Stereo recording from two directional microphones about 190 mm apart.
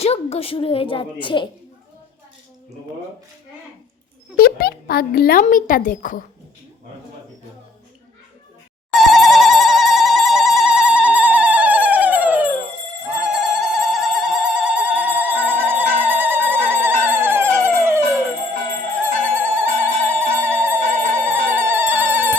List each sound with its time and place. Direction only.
0.0 s a woman's voice: 30° left (ahead or behind)
4.4 s speech: 50° left (ahead or behind)
8.9 s telephone bell ringing: centre (ahead or behind)
13.2 s a sound: 5° right (ahead or behind)
19.2 s music: 10° right (ahead or behind)